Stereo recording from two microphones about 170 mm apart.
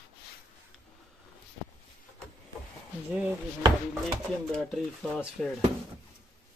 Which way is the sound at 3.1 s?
10° right (ahead or behind).